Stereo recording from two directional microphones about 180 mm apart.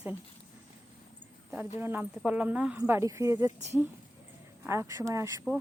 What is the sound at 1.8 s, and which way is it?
Speech, 10° right (ahead or behind).